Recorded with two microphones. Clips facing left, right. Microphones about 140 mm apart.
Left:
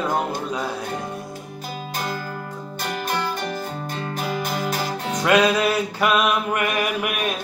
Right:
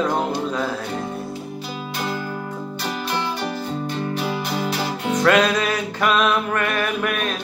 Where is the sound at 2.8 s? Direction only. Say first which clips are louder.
Left 1 dB; 50° left (ahead or behind).